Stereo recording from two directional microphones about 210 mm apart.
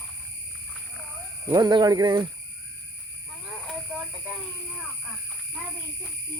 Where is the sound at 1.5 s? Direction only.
20° right (ahead or behind).